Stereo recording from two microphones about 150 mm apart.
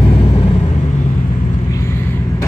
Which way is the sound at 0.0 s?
35° left (ahead or behind).